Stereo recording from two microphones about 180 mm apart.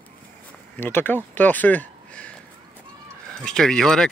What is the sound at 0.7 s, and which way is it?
Speech, 10° left (ahead or behind).